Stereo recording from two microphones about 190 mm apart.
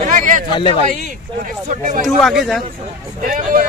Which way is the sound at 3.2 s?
45° right (ahead or behind).